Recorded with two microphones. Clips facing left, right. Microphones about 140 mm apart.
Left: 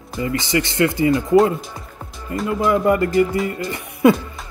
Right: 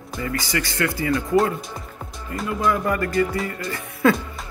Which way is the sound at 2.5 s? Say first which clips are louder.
Left 5 dB; 20° left (ahead or behind).